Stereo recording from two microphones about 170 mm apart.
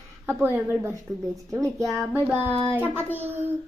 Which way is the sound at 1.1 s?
20° right (ahead or behind).